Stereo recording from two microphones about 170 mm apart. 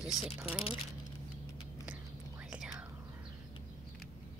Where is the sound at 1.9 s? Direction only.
5° right (ahead or behind).